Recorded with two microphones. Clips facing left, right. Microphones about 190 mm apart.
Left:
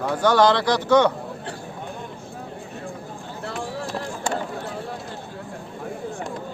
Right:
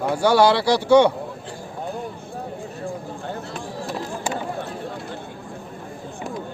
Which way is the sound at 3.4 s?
65° left (ahead or behind).